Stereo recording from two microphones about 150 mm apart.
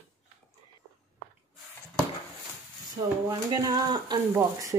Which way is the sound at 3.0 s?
25° right (ahead or behind).